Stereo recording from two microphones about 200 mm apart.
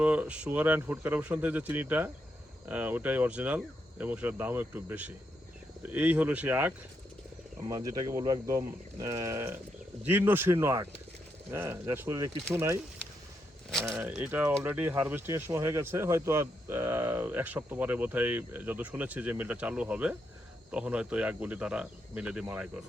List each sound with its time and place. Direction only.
0.0 s speech: 5° right (ahead or behind)
13.8 s speech: 10° right (ahead or behind)